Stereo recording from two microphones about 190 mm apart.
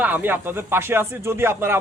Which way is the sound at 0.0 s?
10° right (ahead or behind).